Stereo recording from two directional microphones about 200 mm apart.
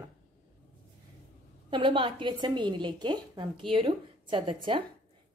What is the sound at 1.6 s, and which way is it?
A woman's voice, 25° right (ahead or behind).